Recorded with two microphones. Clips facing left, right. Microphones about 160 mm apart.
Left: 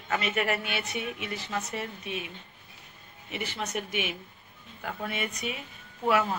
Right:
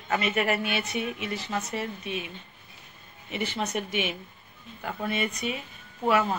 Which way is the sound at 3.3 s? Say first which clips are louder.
Right 4 dB; 30° right (ahead or behind).